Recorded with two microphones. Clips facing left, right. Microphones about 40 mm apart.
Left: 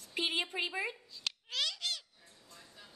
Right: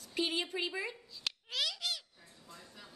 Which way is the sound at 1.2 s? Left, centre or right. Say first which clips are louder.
Even; centre.